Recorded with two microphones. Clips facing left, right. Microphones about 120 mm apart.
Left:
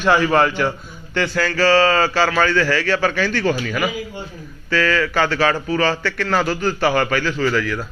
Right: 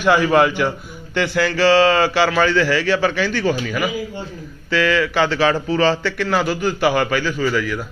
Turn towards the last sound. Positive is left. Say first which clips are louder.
# even
turn(degrees=-10)  # may be behind; listen again after turning